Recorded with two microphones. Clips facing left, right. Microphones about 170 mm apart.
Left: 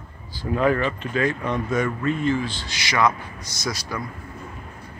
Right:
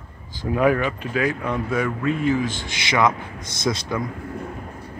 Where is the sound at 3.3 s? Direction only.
55° right (ahead or behind).